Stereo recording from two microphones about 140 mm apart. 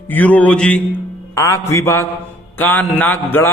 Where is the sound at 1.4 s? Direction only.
20° left (ahead or behind).